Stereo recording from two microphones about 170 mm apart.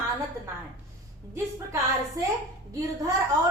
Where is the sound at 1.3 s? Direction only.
20° right (ahead or behind).